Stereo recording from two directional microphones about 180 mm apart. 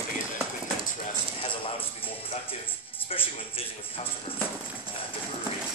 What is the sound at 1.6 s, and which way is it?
Speech, 30° left (ahead or behind).